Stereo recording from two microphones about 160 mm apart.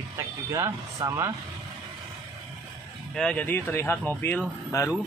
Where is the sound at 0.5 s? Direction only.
20° right (ahead or behind).